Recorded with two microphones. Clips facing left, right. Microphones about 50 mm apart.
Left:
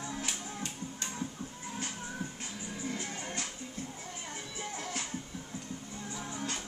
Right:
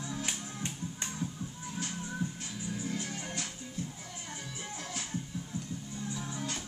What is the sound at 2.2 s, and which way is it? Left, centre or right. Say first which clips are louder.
Music: right 3 dB; left.